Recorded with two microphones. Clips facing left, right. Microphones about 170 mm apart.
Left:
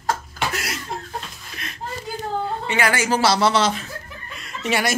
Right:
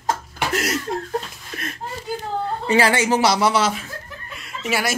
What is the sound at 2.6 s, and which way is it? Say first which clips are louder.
A woman's voice: right 6 dB; 30° right (ahead or behind).